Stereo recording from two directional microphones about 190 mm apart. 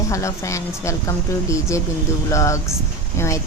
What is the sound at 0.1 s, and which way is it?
Speech, 15° left (ahead or behind).